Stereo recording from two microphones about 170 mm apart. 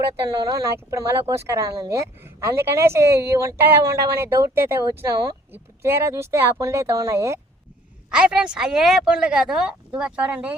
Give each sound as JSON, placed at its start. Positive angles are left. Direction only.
{"t": 0.4, "sound": "speech", "side_deg": -20}
{"t": 8.1, "sound": "speech", "side_deg": -5}